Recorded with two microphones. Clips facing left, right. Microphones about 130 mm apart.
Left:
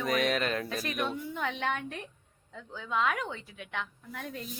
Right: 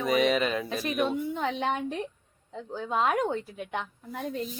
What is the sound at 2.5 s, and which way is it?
A woman's voice, 40° right (ahead or behind).